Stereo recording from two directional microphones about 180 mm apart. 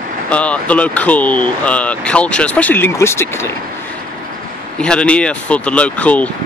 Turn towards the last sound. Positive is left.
turn(degrees=5)  # may be behind; listen again after turning